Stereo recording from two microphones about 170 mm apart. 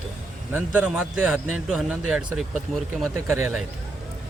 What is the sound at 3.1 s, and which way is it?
Speech, 15° right (ahead or behind).